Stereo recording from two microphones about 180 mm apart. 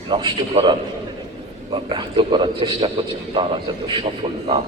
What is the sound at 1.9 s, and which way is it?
A man's voice, 25° right (ahead or behind).